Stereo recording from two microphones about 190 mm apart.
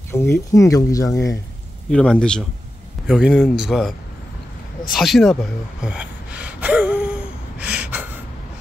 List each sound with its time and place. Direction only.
0.1 s speech: 15° left (ahead or behind)
1.9 s speech: 5° left (ahead or behind)
4.9 s gasp: centre (ahead or behind)